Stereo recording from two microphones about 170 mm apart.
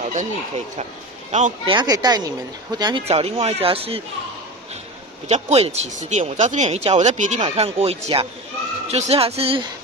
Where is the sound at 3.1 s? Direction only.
35° right (ahead or behind).